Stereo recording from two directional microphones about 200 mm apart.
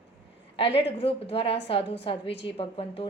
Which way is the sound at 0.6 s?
25° left (ahead or behind).